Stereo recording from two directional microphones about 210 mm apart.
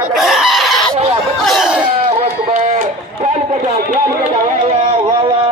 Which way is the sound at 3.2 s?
35° right (ahead or behind).